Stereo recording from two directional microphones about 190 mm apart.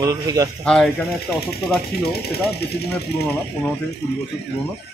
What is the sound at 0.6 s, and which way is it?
Speech, 5° left (ahead or behind).